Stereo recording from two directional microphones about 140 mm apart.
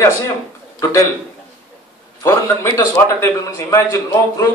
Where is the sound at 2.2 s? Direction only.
20° left (ahead or behind).